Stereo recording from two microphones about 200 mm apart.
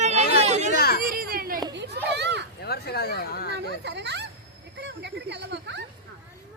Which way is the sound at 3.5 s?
60° right (ahead or behind).